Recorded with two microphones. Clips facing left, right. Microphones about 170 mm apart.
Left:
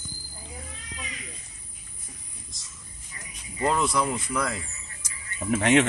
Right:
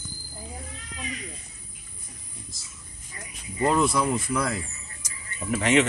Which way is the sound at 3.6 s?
Centre (ahead or behind).